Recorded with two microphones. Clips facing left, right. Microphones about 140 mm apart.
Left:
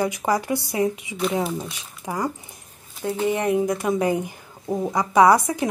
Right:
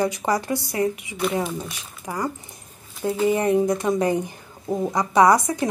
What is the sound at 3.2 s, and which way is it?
A woman's voice, centre (ahead or behind).